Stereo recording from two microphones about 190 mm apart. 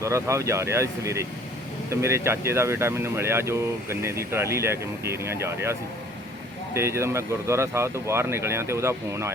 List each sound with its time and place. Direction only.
0.0 s speech: 15° right (ahead or behind)
6.7 s speech: 15° right (ahead or behind)